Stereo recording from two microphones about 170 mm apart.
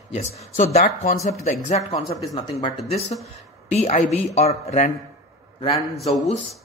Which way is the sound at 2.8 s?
40° left (ahead or behind).